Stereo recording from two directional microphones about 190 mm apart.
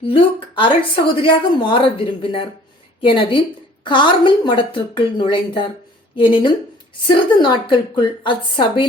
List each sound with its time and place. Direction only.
0.1 s a woman's voice: 25° left (ahead or behind)